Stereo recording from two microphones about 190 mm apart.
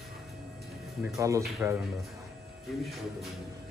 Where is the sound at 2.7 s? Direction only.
Centre (ahead or behind).